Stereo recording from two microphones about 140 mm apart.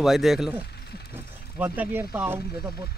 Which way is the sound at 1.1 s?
15° right (ahead or behind).